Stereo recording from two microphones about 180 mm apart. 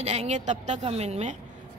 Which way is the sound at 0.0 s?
35° right (ahead or behind).